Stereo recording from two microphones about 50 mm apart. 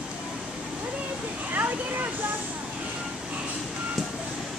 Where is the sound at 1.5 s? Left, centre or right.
Right.